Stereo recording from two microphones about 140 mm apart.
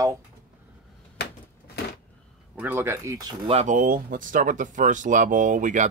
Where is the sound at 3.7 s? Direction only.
90° right.